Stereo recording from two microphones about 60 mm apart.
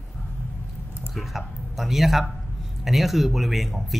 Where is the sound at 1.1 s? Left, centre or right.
Centre.